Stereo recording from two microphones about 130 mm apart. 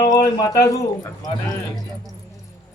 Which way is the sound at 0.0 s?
30° left (ahead or behind).